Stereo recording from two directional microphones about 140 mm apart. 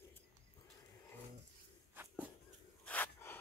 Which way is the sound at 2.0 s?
15° right (ahead or behind).